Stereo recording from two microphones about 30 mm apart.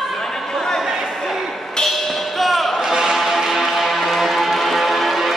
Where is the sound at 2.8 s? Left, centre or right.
Centre.